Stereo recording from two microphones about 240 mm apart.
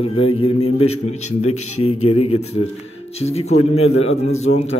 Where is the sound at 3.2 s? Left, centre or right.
Left.